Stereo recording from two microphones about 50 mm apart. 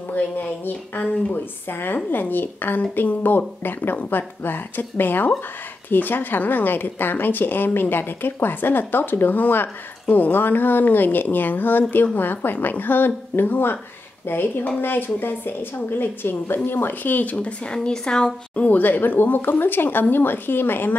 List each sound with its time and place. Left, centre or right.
0.1 s a woman's voice: left; by 18.7 s centre
18.7 s a woman's voice: left